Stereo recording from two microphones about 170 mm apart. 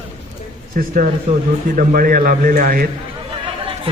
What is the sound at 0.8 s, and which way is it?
A man's voice, 55° right (ahead or behind).